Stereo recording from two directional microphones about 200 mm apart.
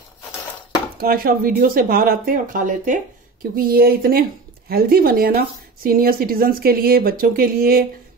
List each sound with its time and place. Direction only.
0.9 s speech: 45° right (ahead or behind)